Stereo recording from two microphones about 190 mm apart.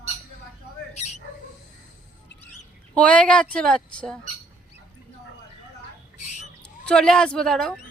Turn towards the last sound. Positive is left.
turn(degrees=5)  # may be behind; listen again after turning